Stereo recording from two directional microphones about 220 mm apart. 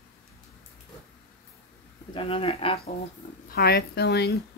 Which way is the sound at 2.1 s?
25° left (ahead or behind).